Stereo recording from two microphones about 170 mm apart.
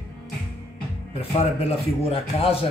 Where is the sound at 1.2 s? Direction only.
35° left (ahead or behind).